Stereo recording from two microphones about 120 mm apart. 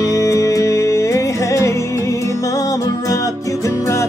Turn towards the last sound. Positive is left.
turn(degrees=25)  # may be behind; listen again after turning